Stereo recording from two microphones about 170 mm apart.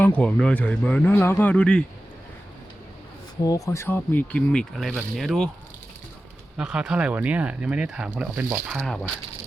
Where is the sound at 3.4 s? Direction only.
20° left (ahead or behind); by 5.5 s centre (ahead or behind).